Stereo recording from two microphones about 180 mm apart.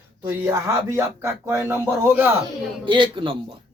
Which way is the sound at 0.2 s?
15° right (ahead or behind).